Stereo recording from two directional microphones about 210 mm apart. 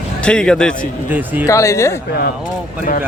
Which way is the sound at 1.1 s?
10° right (ahead or behind).